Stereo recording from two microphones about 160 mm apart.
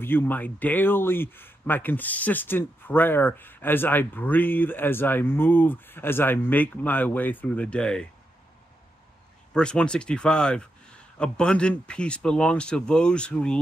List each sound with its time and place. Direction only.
0.0 s speech: 15° left (ahead or behind)
9.5 s speech: 5° left (ahead or behind)